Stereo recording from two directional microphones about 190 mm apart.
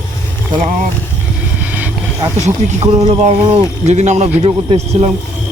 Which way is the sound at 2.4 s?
35° right (ahead or behind).